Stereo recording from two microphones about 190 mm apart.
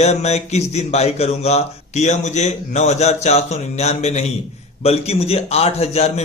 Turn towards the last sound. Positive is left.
turn(degrees=35)  # may be behind; listen again after turning